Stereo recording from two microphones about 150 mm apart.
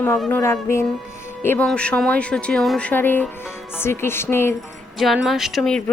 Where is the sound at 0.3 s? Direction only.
15° left (ahead or behind).